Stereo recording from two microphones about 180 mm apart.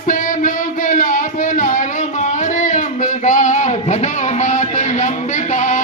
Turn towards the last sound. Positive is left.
turn(degrees=40)  # may be behind; listen again after turning